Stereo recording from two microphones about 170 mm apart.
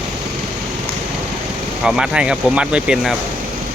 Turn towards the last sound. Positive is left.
turn(degrees=-5)  # may be behind; listen again after turning